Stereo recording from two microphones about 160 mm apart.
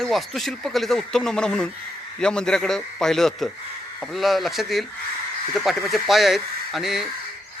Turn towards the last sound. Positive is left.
turn(degrees=-5)  # may be behind; listen again after turning